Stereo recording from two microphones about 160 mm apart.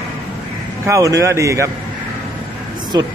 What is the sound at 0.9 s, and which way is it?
Speech, 20° right (ahead or behind).